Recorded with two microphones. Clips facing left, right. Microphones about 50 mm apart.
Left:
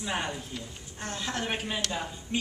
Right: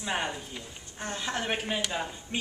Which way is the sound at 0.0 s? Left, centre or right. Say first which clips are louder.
Right 1 dB; centre.